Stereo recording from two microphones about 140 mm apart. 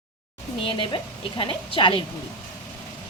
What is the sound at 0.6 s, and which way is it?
A woman's voice, 35° left (ahead or behind).